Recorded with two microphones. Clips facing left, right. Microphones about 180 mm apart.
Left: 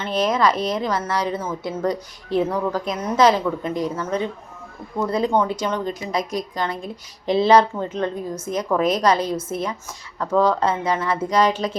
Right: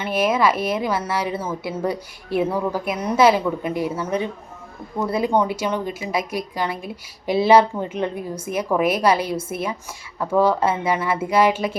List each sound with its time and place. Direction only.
0.0 s a woman's voice: 10° right (ahead or behind)